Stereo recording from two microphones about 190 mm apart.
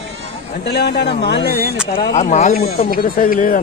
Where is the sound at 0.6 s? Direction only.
60° left (ahead or behind).